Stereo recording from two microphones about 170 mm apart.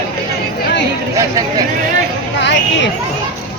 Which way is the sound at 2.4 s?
90° left.